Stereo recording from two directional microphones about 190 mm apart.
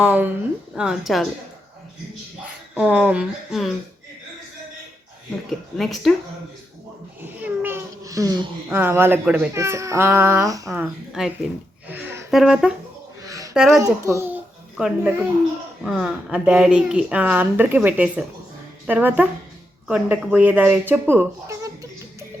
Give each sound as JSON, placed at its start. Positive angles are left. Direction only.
{"t": 0.0, "sound": "a child's voice", "side_deg": -5}
{"t": 2.7, "sound": "a child's voice", "side_deg": -5}
{"t": 5.5, "sound": "speech", "side_deg": 0}
{"t": 7.2, "sound": "a child's voice", "side_deg": -10}
{"t": 10.7, "sound": "speech", "side_deg": 0}
{"t": 11.9, "sound": "a sound", "side_deg": -10}
{"t": 12.3, "sound": "speech", "side_deg": 0}
{"t": 13.2, "sound": "a sound", "side_deg": -20}
{"t": 13.5, "sound": "speech", "side_deg": -5}
{"t": 13.7, "sound": "a child's voice", "side_deg": -15}